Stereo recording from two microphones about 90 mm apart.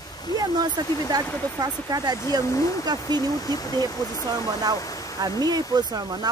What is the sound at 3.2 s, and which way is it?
Speech, 40° left (ahead or behind).